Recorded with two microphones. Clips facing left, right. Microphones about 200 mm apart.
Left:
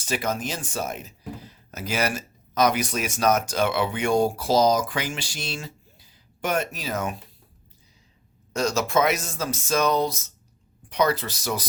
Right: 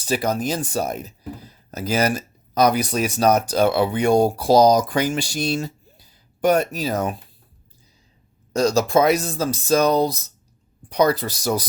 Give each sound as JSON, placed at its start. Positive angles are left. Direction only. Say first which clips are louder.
{"t": 0.0, "sound": "speech", "louder": "right 5 dB", "side_deg": -35}
{"t": 8.5, "sound": "speech", "louder": "right 5 dB", "side_deg": -35}